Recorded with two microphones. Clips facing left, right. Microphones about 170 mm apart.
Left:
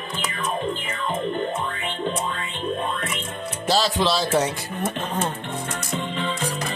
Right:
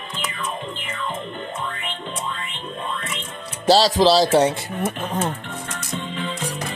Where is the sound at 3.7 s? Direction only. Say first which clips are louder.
Right 6 dB; 35° right (ahead or behind).